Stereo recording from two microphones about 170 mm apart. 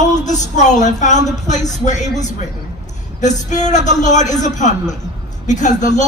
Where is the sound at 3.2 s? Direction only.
45° left (ahead or behind).